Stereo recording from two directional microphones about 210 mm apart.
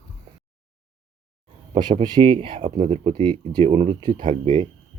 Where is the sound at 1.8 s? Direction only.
20° right (ahead or behind).